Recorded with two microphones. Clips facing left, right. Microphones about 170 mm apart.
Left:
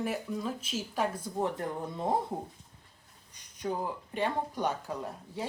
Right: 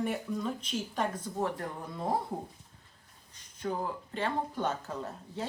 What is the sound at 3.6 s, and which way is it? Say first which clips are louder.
Speech: even; 15° left (ahead or behind).